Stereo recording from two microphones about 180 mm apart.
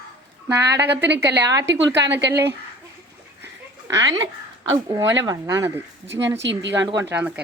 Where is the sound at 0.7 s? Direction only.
70° right (ahead or behind).